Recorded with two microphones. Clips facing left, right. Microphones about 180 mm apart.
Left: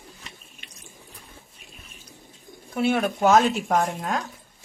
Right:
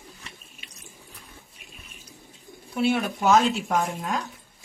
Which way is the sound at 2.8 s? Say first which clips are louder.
Left 2 dB; 50° left (ahead or behind).